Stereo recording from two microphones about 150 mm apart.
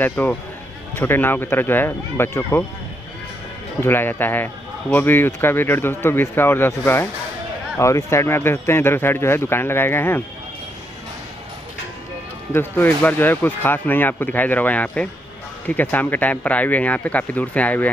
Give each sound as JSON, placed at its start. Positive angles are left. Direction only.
{"t": 0.0, "sound": "speech", "side_deg": 10}
{"t": 3.8, "sound": "speech", "side_deg": 15}
{"t": 12.5, "sound": "speech", "side_deg": 10}